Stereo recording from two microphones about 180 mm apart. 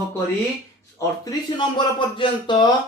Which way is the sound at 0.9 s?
20° left (ahead or behind).